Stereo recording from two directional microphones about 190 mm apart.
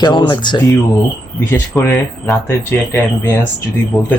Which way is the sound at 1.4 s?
10° left (ahead or behind).